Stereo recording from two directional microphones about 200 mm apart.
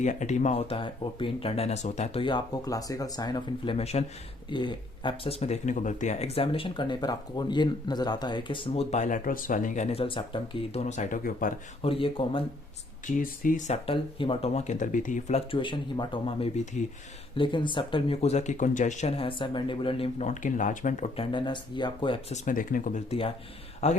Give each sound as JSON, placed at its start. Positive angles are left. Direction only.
{"t": 0.0, "sound": "speech", "side_deg": 35}
{"t": 11.8, "sound": "speech", "side_deg": 25}
{"t": 13.1, "sound": "speech", "side_deg": 45}
{"t": 15.5, "sound": "speech", "side_deg": 25}
{"t": 22.4, "sound": "speech", "side_deg": 40}